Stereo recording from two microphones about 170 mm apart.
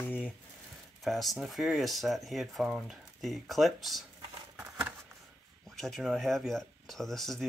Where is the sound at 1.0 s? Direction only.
Centre (ahead or behind).